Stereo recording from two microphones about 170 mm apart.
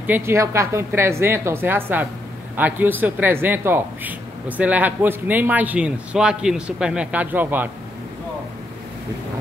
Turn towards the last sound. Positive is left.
turn(degrees=-10)  # may be behind; listen again after turning